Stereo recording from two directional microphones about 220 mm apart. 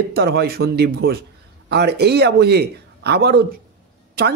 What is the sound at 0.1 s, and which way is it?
Speech, 45° right (ahead or behind).